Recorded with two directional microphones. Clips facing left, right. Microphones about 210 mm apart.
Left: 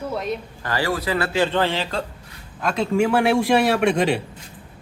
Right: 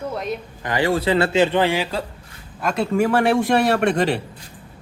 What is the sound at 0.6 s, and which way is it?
A man's voice, 20° right (ahead or behind).